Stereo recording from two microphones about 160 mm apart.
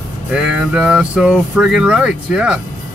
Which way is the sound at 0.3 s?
5° right (ahead or behind).